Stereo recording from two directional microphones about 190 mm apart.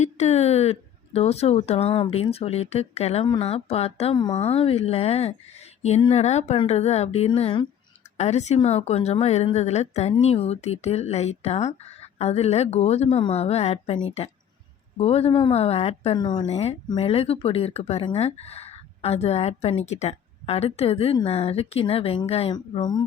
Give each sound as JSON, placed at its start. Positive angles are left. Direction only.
{"t": 0.0, "sound": "a woman's voice", "side_deg": 35}